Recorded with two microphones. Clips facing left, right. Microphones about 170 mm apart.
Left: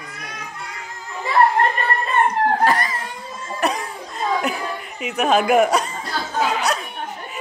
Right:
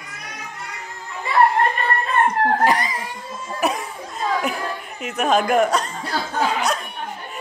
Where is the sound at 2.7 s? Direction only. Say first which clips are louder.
Even; 15° right (ahead or behind).